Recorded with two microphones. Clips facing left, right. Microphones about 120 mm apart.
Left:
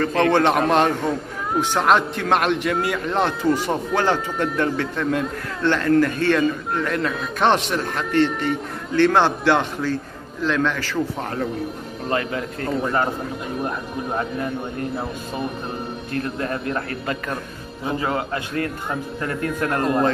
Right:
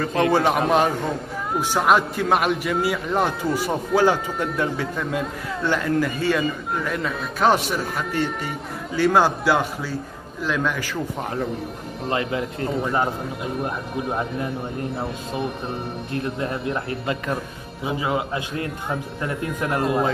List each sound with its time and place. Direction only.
0.0 s a man's voice: 10° right (ahead or behind)
12.1 s speech: 20° right (ahead or behind)
16.1 s a man's voice: 15° right (ahead or behind)
17.8 s a man's voice: 10° right (ahead or behind)